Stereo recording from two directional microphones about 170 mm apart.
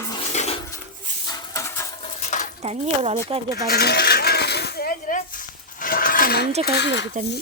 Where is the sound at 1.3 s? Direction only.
20° left (ahead or behind).